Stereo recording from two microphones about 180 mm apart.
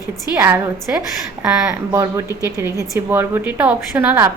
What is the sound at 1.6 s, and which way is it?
A woman's voice, 15° right (ahead or behind).